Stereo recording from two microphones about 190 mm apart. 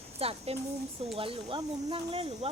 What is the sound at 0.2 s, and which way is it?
Speech, 30° right (ahead or behind).